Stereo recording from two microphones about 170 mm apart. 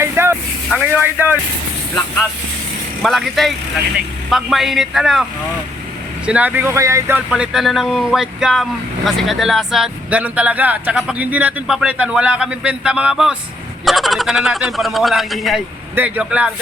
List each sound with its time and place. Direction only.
0.0 s vehicle: 15° right (ahead or behind)
0.7 s speech: 10° right (ahead or behind)
3.0 s a man's voice: centre (ahead or behind)
6.2 s speech: 10° right (ahead or behind)
7.3 s a man's voice: 5° right (ahead or behind)